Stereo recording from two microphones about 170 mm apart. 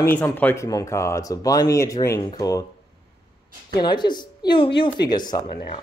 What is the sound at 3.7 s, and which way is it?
Speech, 25° left (ahead or behind).